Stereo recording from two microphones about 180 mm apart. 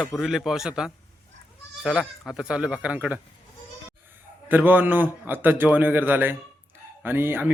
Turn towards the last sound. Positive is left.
turn(degrees=-10)  # may be behind; listen again after turning